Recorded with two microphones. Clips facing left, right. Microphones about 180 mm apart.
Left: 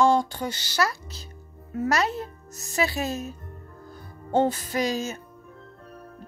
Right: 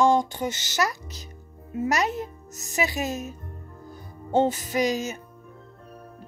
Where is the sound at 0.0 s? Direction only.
15° right (ahead or behind).